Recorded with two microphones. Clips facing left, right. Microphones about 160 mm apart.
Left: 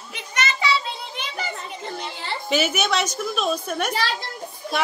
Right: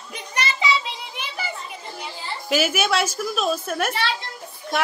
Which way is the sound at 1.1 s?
5° right (ahead or behind).